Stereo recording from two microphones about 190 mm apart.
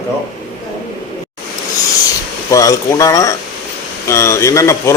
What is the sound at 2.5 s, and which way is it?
A man's voice, 15° left (ahead or behind).